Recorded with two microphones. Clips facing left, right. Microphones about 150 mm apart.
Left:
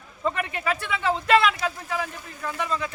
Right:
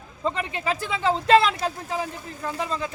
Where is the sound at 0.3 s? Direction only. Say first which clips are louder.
Even; 25° right (ahead or behind).